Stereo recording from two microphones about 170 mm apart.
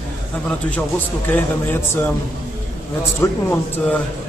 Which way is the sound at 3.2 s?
15° left (ahead or behind).